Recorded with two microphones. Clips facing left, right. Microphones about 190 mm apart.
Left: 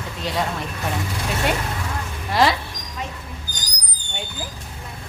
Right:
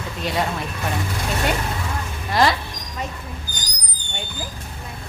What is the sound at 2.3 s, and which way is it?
Speech, 5° left (ahead or behind).